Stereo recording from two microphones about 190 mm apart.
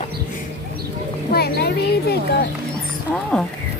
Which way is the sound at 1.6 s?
55° left (ahead or behind).